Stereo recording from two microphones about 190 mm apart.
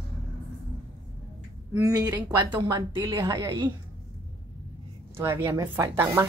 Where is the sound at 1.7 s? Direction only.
20° right (ahead or behind).